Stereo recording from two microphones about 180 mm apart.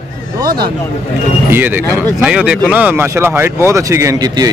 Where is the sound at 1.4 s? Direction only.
10° right (ahead or behind).